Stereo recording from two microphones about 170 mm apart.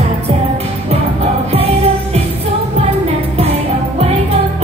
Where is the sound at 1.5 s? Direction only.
35° right (ahead or behind).